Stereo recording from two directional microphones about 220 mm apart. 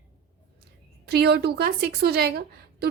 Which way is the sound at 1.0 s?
45° right (ahead or behind).